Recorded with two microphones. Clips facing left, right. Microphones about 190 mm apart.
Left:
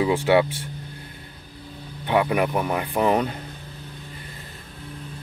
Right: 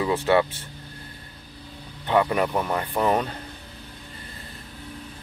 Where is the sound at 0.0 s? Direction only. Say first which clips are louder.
Left 2 dB; 10° left (ahead or behind).